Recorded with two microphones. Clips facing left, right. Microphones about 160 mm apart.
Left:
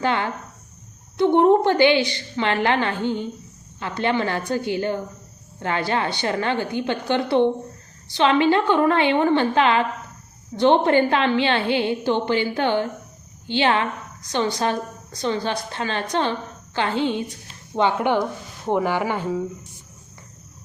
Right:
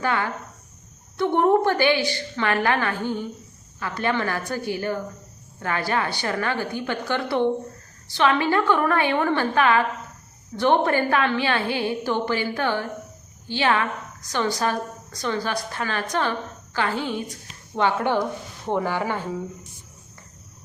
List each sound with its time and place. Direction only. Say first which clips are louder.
0.0 s a woman's voice: left 2 dB; 25° left (ahead or behind)